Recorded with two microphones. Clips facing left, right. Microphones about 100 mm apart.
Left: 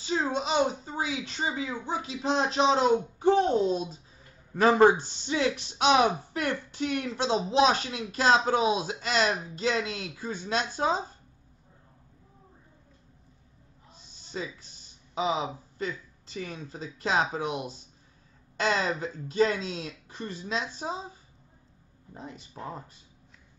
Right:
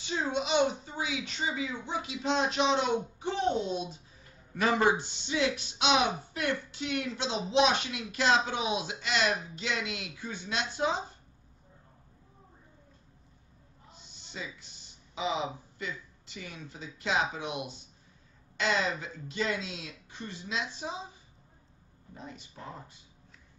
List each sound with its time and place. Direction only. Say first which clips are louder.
0.0 s speech: left 3 dB; 35° left (ahead or behind)
15.1 s speech: left 4 dB; 35° left (ahead or behind)